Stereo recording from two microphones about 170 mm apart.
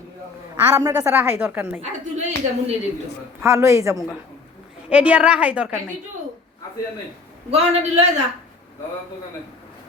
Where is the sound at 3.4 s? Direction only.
15° right (ahead or behind).